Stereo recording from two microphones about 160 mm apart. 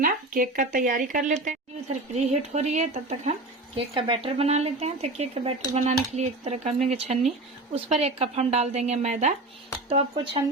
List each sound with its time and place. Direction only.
0.0 s a woman's voice: 60° right (ahead or behind)
3.8 s a woman's voice: 30° right (ahead or behind)
9.9 s speech: 35° right (ahead or behind)